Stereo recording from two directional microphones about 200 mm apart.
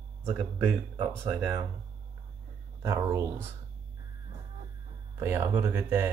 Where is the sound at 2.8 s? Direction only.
15° right (ahead or behind).